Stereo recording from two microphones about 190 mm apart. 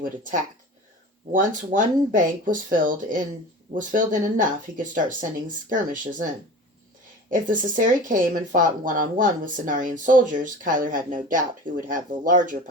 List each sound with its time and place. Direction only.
0.0 s speech: 45° right (ahead or behind)
7.3 s speech: 45° right (ahead or behind)